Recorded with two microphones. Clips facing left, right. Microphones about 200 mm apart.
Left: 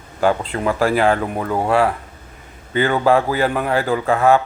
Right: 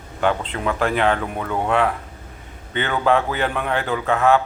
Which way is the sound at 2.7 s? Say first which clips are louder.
Left 4 dB; 35° left (ahead or behind).